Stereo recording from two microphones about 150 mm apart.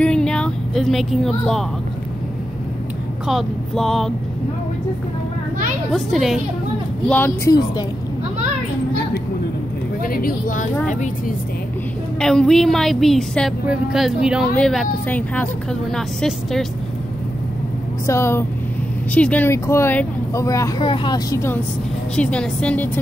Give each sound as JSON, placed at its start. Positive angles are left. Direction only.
{"t": 0.0, "sound": "a sound", "side_deg": 5}
{"t": 3.3, "sound": "a woman's voice", "side_deg": 0}
{"t": 5.9, "sound": "a woman's voice", "side_deg": 0}
{"t": 7.1, "sound": "speech", "side_deg": 15}
{"t": 10.0, "sound": "a woman's voice", "side_deg": 75}
{"t": 10.9, "sound": "a woman's voice", "side_deg": 55}
{"t": 12.2, "sound": "a woman's voice", "side_deg": 5}
{"t": 18.0, "sound": "speech", "side_deg": 15}
{"t": 20.8, "sound": "speech", "side_deg": 30}
{"t": 22.1, "sound": "speech", "side_deg": 5}